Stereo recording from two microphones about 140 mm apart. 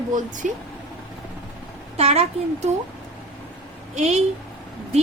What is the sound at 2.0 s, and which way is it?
Speech, 50° right (ahead or behind).